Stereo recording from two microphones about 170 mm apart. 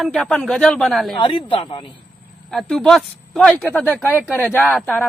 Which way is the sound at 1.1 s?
30° left (ahead or behind).